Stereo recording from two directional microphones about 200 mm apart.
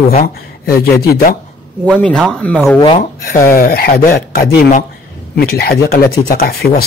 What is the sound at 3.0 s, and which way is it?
Speech, 45° left (ahead or behind).